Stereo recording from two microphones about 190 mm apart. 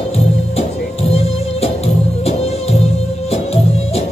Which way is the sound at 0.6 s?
30° left (ahead or behind).